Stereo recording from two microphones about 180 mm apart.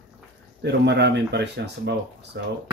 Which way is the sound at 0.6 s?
70° right (ahead or behind).